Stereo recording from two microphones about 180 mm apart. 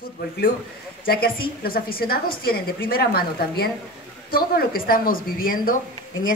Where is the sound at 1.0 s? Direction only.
60° left (ahead or behind).